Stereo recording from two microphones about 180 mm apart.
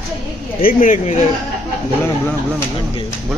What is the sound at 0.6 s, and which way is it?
Speech, 50° left (ahead or behind).